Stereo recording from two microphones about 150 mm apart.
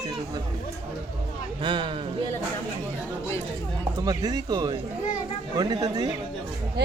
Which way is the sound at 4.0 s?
25° right (ahead or behind).